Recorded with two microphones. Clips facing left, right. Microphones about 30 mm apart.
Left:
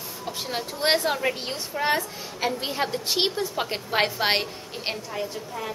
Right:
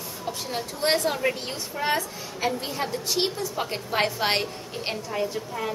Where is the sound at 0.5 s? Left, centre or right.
Left.